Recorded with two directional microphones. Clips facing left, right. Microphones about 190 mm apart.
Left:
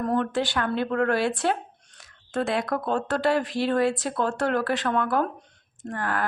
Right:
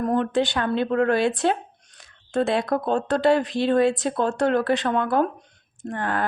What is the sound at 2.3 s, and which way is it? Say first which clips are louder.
Speech: right 4 dB; 25° right (ahead or behind).